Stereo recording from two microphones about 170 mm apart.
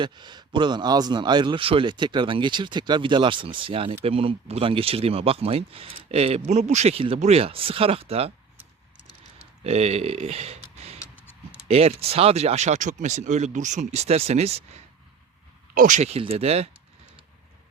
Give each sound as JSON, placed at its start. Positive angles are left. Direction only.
{"t": 0.0, "sound": "a man's voice", "side_deg": -25}
{"t": 9.6, "sound": "speech", "side_deg": -40}
{"t": 15.7, "sound": "speech", "side_deg": -50}